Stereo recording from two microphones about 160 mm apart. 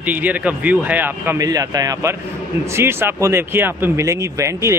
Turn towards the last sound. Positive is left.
turn(degrees=-20)  # may be behind; listen again after turning